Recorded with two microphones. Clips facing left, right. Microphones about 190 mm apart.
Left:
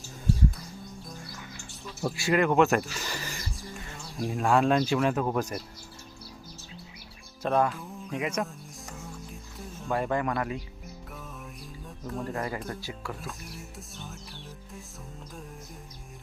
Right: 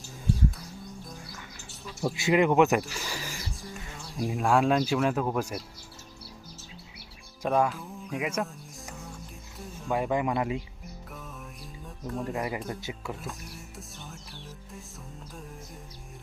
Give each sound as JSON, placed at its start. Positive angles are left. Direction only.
{"t": 2.1, "sound": "music", "side_deg": -20}
{"t": 4.3, "sound": "speech", "side_deg": -5}
{"t": 7.4, "sound": "speech", "side_deg": -10}
{"t": 9.6, "sound": "music", "side_deg": 0}
{"t": 10.1, "sound": "speech", "side_deg": -15}
{"t": 12.0, "sound": "speech", "side_deg": 0}
{"t": 12.3, "sound": "speech", "side_deg": -15}
{"t": 13.2, "sound": "speech", "side_deg": 0}